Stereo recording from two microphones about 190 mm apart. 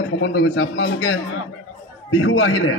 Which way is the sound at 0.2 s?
75° left (ahead or behind).